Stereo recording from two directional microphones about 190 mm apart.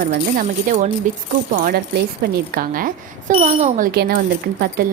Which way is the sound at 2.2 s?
50° right (ahead or behind).